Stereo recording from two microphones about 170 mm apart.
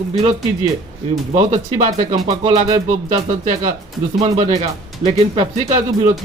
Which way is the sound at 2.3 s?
35° right (ahead or behind).